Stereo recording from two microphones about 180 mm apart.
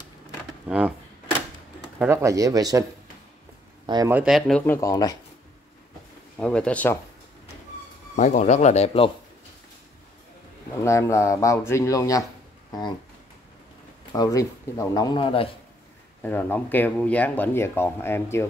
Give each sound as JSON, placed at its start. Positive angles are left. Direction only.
{"t": 0.7, "sound": "speech", "side_deg": -5}
{"t": 2.0, "sound": "speech", "side_deg": -15}
{"t": 3.8, "sound": "speech", "side_deg": -25}
{"t": 4.1, "sound": "speech", "side_deg": -5}
{"t": 4.7, "sound": "speech", "side_deg": 20}
{"t": 6.3, "sound": "speech", "side_deg": 5}
{"t": 8.2, "sound": "speech", "side_deg": 45}
{"t": 10.8, "sound": "speech", "side_deg": 15}
{"t": 14.1, "sound": "speech", "side_deg": 20}
{"t": 16.2, "sound": "speech", "side_deg": 10}